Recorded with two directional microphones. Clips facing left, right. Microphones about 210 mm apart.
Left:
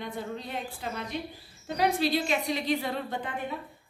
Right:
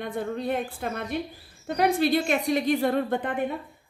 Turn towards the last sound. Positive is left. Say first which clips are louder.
# right 8 dB
turn(degrees=-55)  # may be behind; listen again after turning